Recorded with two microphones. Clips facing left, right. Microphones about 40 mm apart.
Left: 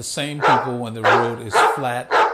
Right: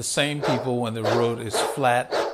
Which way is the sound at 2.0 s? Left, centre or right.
Left.